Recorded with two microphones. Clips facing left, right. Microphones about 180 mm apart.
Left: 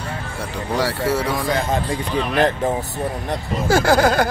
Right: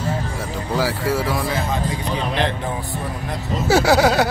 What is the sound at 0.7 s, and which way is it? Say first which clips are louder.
Speech: left 1 dB; centre (ahead or behind).